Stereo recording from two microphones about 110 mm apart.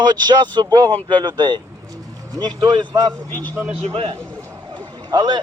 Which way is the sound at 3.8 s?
70° right (ahead or behind).